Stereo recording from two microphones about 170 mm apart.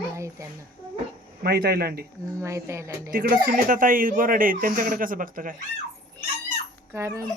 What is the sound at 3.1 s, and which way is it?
Speech, 55° right (ahead or behind).